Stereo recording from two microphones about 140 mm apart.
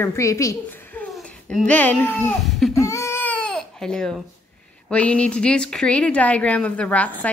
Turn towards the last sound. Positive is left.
turn(degrees=10)  # may be behind; listen again after turning